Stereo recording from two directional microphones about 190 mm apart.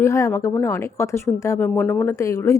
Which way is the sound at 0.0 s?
15° left (ahead or behind).